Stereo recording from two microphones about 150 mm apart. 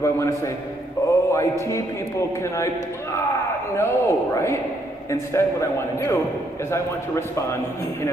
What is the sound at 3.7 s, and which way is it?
A man's voice, 20° left (ahead or behind).